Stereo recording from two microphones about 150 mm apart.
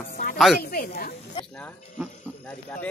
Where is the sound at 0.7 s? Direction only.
80° left.